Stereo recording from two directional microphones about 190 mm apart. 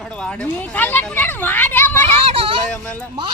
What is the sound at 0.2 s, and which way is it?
Speech, 5° left (ahead or behind).